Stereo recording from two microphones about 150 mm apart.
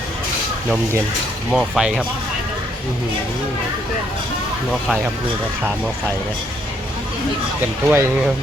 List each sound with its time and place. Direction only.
1.5 s speech: 5° right (ahead or behind)
7.9 s speech: 15° right (ahead or behind)